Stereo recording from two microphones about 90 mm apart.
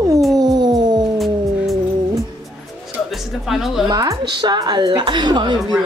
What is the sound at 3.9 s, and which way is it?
Speech, 50° right (ahead or behind).